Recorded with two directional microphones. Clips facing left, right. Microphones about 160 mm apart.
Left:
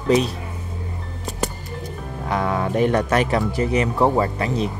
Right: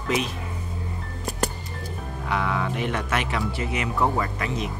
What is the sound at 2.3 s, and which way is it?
Speech, 40° left (ahead or behind).